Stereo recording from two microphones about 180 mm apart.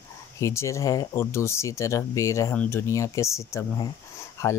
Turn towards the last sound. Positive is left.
turn(degrees=15)  # may be behind; listen again after turning